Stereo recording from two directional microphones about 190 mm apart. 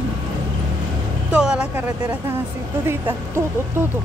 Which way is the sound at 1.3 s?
5° right (ahead or behind).